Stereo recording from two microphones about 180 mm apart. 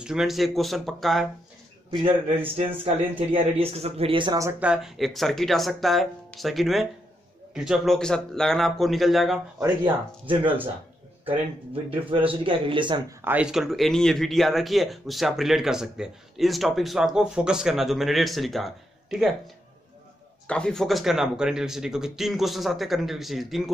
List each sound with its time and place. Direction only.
0.0 s speech: 5° right (ahead or behind)
1.9 s a man's voice: 30° right (ahead or behind); by 9.4 s centre (ahead or behind)
10.4 s speech: 10° right (ahead or behind)
11.7 s a man's voice: 30° right (ahead or behind)
13.2 s speech: 10° right (ahead or behind)